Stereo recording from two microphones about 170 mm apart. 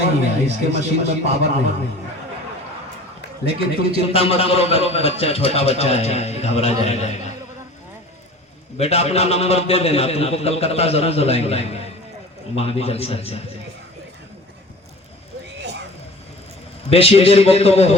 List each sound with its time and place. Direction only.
0.0 s a man's voice: 40° right (ahead or behind)
3.4 s a man's voice: 35° right (ahead or behind)
4.1 s a man's voice: 35° left (ahead or behind)
8.8 s a man's voice: 40° left (ahead or behind)
16.9 s a man's voice: 35° left (ahead or behind)